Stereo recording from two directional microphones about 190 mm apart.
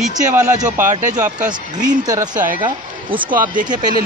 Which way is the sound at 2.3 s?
45° right (ahead or behind).